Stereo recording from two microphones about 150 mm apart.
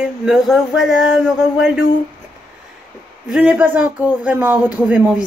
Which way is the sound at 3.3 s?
10° right (ahead or behind).